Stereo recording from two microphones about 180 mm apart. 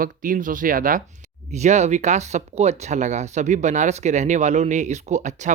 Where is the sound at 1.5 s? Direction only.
40° right (ahead or behind).